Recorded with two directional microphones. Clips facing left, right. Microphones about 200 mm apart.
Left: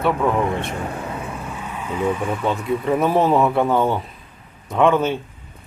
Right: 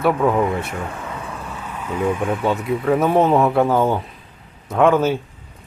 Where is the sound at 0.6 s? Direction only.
30° left (ahead or behind).